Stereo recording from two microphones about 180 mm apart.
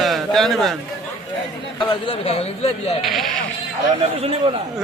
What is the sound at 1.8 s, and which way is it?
Speech, 25° left (ahead or behind).